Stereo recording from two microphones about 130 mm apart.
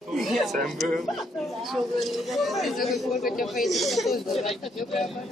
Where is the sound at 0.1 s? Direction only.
Centre (ahead or behind).